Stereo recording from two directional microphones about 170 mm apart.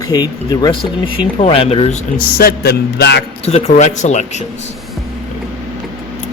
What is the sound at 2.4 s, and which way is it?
Speech, 70° left (ahead or behind).